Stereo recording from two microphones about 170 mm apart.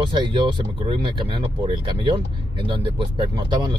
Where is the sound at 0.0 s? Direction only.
30° right (ahead or behind).